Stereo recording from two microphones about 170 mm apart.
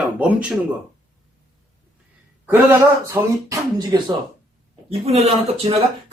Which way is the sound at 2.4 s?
15° right (ahead or behind).